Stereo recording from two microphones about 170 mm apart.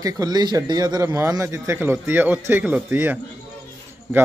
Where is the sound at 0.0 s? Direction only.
20° right (ahead or behind).